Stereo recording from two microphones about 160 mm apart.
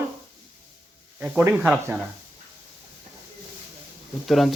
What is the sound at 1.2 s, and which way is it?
Speech, 10° right (ahead or behind).